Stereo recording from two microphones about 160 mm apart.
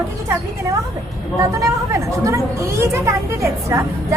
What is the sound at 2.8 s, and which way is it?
A woman's voice, 20° right (ahead or behind).